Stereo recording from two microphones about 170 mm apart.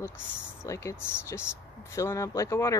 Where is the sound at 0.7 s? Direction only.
15° left (ahead or behind).